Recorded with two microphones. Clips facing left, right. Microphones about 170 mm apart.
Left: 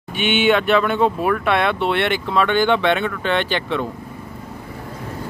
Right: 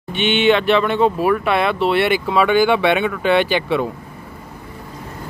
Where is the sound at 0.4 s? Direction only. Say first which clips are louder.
Right 1 dB; centre (ahead or behind).